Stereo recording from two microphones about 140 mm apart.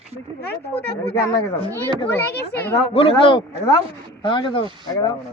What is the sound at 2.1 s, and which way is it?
Speech, 15° left (ahead or behind).